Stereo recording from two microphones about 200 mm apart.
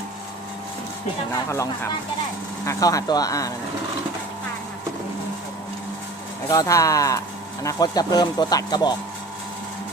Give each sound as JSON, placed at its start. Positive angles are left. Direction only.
{"t": 1.5, "sound": "speech", "side_deg": 15}
{"t": 6.5, "sound": "speech", "side_deg": 15}